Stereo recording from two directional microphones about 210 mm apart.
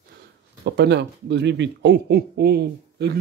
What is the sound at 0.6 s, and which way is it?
Speech, 50° right (ahead or behind).